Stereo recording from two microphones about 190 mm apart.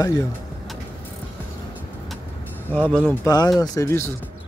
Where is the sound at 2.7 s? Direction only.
5° left (ahead or behind).